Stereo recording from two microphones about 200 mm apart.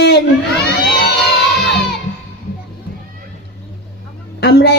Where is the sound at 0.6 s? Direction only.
55° left (ahead or behind).